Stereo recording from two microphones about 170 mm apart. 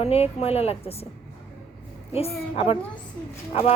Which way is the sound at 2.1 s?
35° left (ahead or behind).